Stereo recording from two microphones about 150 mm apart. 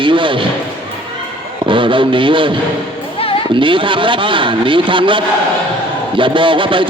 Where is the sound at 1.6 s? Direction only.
35° right (ahead or behind).